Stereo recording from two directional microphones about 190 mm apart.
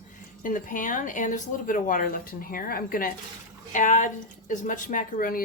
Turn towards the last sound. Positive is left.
turn(degrees=45)  # may be behind; listen again after turning